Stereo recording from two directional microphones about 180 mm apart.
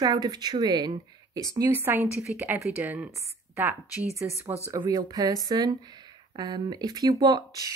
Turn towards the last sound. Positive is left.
turn(degrees=-20)  # may be behind; listen again after turning